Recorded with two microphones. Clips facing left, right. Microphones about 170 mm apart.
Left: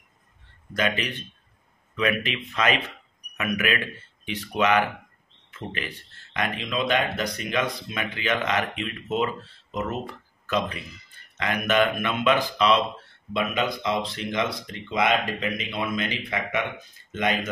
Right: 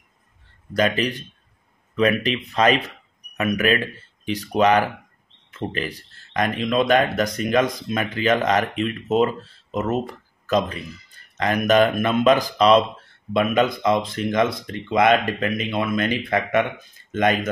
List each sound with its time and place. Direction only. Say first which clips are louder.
0.7 s speech: right 6 dB; 35° right (ahead or behind)